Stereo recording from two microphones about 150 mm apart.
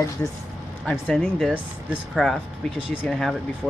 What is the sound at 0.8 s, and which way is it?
Speech, 5° left (ahead or behind).